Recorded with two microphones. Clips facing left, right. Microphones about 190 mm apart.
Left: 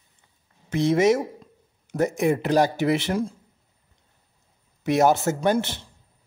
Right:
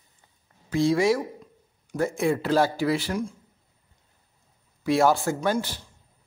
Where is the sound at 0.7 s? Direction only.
20° left (ahead or behind).